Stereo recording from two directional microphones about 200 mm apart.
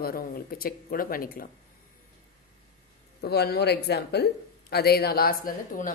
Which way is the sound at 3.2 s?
55° left (ahead or behind).